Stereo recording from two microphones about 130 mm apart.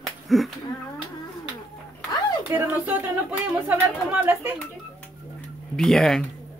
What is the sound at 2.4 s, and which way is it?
Speech, 15° right (ahead or behind).